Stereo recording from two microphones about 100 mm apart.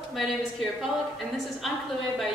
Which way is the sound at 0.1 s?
Centre (ahead or behind).